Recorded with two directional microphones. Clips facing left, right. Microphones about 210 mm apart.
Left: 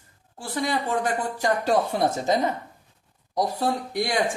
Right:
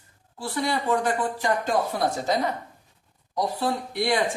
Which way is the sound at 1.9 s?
20° left (ahead or behind).